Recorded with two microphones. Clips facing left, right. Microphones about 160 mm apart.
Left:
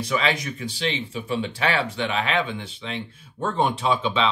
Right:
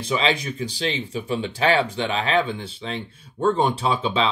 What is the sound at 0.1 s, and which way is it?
Speech, 30° right (ahead or behind).